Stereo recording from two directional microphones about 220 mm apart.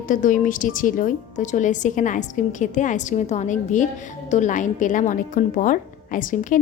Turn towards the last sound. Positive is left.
turn(degrees=35)  # may be behind; listen again after turning